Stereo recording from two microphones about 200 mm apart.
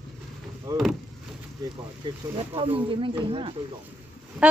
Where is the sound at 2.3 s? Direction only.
25° right (ahead or behind).